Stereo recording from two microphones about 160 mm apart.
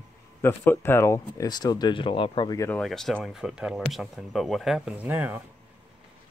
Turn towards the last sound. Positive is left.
turn(degrees=-10)  # may be behind; listen again after turning